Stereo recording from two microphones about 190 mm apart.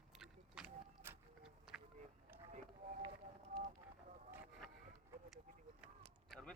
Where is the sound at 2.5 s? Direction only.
40° right (ahead or behind).